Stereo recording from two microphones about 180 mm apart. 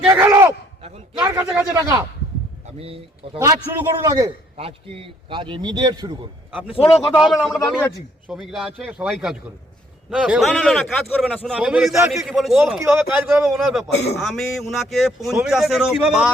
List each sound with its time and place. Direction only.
0.1 s speech: 15° right (ahead or behind)
0.8 s a man's voice: 35° right (ahead or behind)
1.2 s speech: 15° right (ahead or behind)
2.6 s speech: 35° right (ahead or behind)
3.3 s a man's voice: 20° right (ahead or behind)
4.5 s a man's voice: 30° right (ahead or behind)
6.5 s a man's voice: 5° right (ahead or behind)